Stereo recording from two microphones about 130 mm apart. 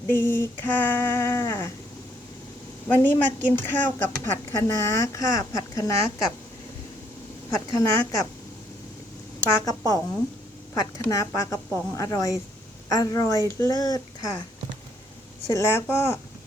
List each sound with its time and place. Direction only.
0.1 s female singing: 15° left (ahead or behind)
2.8 s a woman's voice: 15° left (ahead or behind)
7.5 s a woman's voice: 25° left (ahead or behind)
9.6 s a woman's voice: 25° left (ahead or behind)
15.4 s a woman's voice: 20° left (ahead or behind)